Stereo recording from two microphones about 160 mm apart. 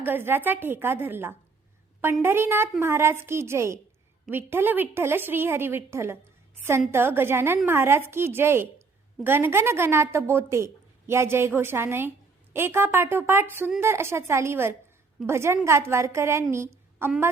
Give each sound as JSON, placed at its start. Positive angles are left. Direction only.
{"t": 0.0, "sound": "a woman's voice", "side_deg": -15}